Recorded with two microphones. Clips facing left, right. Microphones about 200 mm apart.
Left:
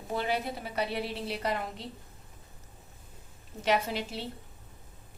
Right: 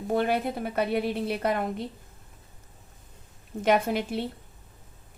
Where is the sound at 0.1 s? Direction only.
50° right (ahead or behind).